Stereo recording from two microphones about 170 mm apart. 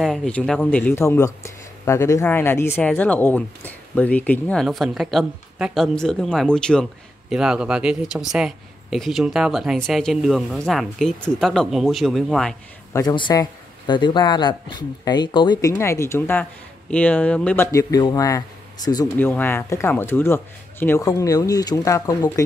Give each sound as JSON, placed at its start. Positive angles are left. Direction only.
{"t": 0.0, "sound": "speech", "side_deg": 0}
{"t": 12.9, "sound": "speech", "side_deg": 25}
{"t": 15.7, "sound": "speech", "side_deg": 15}
{"t": 17.6, "sound": "speech", "side_deg": 20}
{"t": 19.1, "sound": "speech", "side_deg": 10}